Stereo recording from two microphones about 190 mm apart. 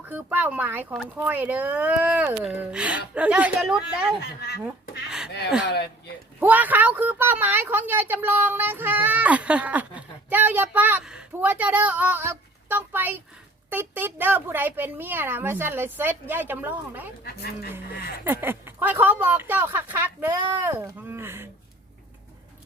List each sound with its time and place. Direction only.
0.0 s a woman's voice: 10° right (ahead or behind)
4.2 s speech: 60° left (ahead or behind)
6.4 s a woman's voice: 10° right (ahead or behind)
17.2 s speech: 55° left (ahead or behind)
18.3 s a woman's voice: 10° right (ahead or behind)